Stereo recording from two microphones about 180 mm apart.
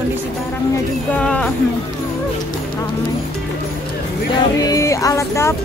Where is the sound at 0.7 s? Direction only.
10° left (ahead or behind).